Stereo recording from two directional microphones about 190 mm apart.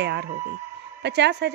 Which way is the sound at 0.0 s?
65° right (ahead or behind).